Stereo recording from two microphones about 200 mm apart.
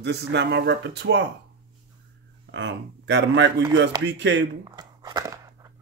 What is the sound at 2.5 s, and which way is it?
Speech, 65° right (ahead or behind).